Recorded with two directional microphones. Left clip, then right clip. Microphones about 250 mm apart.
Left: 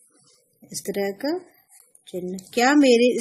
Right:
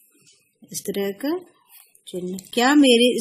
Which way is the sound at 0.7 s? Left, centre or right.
Right.